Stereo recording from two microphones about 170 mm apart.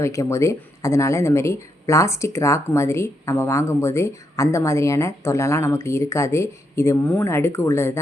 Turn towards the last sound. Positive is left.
turn(degrees=15)  # may be behind; listen again after turning